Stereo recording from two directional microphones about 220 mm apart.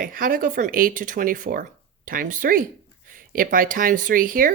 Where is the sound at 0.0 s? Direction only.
40° right (ahead or behind).